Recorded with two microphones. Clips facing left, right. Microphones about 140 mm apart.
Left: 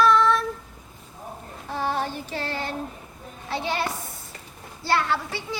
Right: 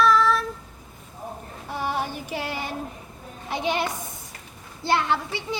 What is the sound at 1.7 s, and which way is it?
Child singing, 15° right (ahead or behind).